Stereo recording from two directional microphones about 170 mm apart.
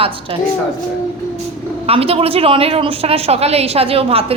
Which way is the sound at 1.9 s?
35° right (ahead or behind).